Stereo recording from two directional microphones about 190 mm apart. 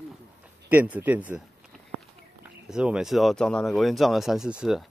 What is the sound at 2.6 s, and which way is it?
Speech, 5° right (ahead or behind).